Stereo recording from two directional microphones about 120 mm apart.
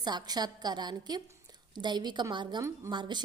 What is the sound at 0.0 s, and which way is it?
A woman's voice, 35° right (ahead or behind).